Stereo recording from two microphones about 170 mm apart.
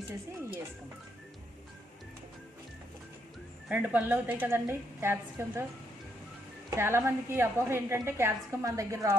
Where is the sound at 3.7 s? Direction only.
10° right (ahead or behind).